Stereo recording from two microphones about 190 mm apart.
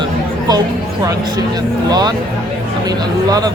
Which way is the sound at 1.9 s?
20° right (ahead or behind).